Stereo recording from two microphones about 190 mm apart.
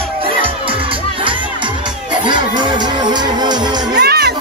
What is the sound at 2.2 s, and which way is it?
Speech, 25° right (ahead or behind).